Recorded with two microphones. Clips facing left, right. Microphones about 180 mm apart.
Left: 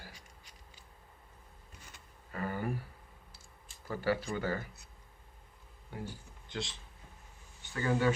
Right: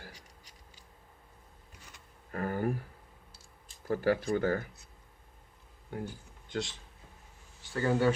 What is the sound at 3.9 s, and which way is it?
Speech, 45° right (ahead or behind).